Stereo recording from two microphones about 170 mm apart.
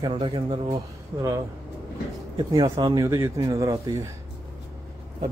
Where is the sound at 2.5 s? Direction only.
25° right (ahead or behind).